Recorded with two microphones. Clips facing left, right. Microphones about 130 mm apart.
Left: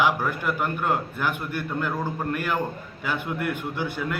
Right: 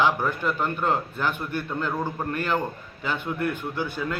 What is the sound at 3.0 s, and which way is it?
A man's voice, 15° left (ahead or behind).